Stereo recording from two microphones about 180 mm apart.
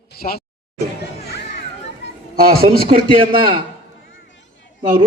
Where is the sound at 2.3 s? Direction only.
55° right (ahead or behind).